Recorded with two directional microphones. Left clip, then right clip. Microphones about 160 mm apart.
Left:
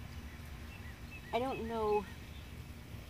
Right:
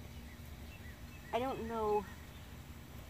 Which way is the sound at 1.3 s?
Centre (ahead or behind).